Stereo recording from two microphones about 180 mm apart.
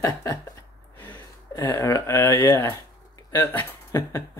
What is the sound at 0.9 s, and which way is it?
A man's voice, 10° left (ahead or behind).